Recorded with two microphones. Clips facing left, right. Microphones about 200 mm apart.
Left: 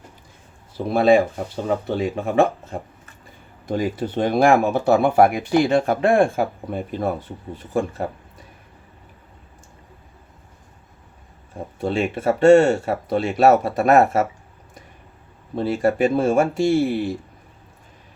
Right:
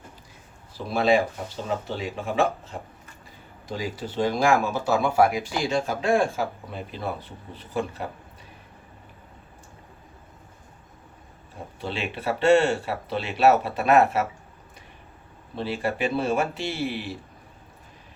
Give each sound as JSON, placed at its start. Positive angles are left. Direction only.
{"t": 0.9, "sound": "speech", "side_deg": 55}
{"t": 11.8, "sound": "speech", "side_deg": 45}
{"t": 15.5, "sound": "speech", "side_deg": 45}